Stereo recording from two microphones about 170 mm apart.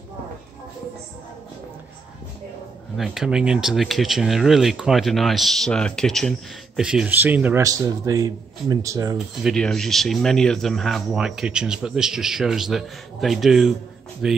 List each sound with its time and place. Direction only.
3.0 s a man's voice: 5° right (ahead or behind); by 9.2 s 20° right (ahead or behind)
9.4 s speech: centre (ahead or behind)